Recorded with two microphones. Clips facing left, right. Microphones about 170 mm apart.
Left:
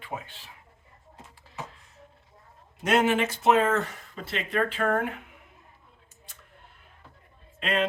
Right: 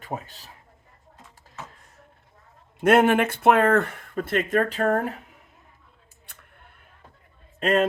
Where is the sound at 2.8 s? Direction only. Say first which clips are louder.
Right 5 dB; 55° right (ahead or behind); by 5.2 s 35° right (ahead or behind).